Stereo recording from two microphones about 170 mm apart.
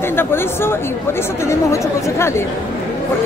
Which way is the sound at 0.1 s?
15° left (ahead or behind).